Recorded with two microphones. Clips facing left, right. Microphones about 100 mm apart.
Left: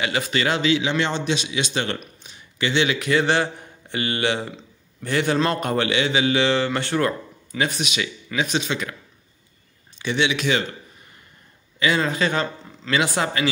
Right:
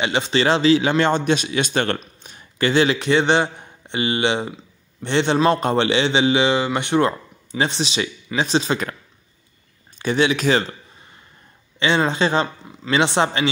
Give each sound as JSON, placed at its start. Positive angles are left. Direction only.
{"t": 0.0, "sound": "a man's voice", "side_deg": -25}
{"t": 0.8, "sound": "a man's voice", "side_deg": -45}
{"t": 9.9, "sound": "a man's voice", "side_deg": -40}
{"t": 11.8, "sound": "a man's voice", "side_deg": -25}